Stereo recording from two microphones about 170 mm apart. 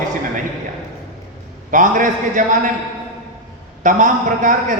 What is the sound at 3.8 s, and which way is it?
Speech, 50° right (ahead or behind).